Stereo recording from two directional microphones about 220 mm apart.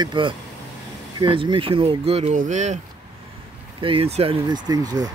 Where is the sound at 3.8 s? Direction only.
25° right (ahead or behind).